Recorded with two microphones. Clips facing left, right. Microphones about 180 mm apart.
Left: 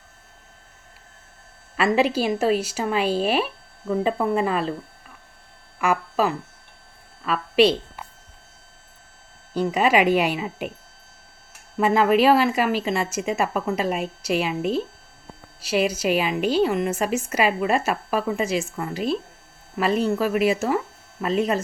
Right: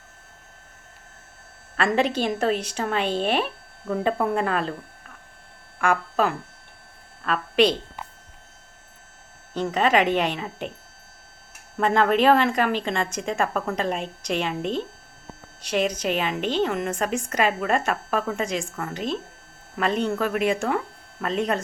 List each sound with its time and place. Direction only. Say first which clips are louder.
1.7 s a woman's voice: left 2 dB; 5° left (ahead or behind)
5.8 s a woman's voice: left 1 dB; 5° left (ahead or behind)
9.6 s a woman's voice: left 2 dB; 10° left (ahead or behind)
11.8 s a woman's voice: left 2 dB; 5° left (ahead or behind)